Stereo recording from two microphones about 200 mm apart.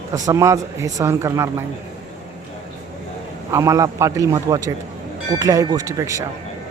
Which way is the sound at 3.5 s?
15° right (ahead or behind).